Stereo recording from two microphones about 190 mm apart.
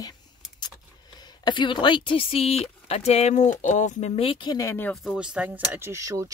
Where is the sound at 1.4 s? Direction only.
25° left (ahead or behind).